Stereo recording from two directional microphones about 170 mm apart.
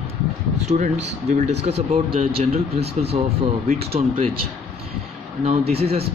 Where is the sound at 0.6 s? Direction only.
40° right (ahead or behind).